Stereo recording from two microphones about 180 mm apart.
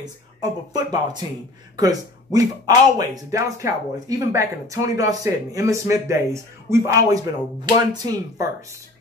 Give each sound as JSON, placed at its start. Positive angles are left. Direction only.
{"t": 0.0, "sound": "speech", "side_deg": -20}